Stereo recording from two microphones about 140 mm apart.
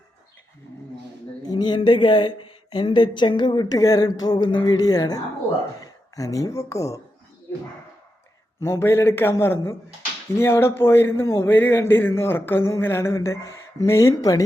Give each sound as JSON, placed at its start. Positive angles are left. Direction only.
{"t": 1.4, "sound": "speech", "side_deg": 30}
{"t": 8.6, "sound": "speech", "side_deg": 20}